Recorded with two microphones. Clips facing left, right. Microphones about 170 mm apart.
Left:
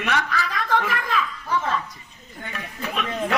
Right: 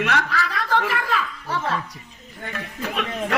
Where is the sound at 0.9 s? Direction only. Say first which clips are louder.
Even; 75° right (ahead or behind).